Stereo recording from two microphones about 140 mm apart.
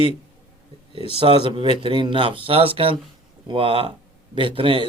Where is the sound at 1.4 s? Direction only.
35° right (ahead or behind).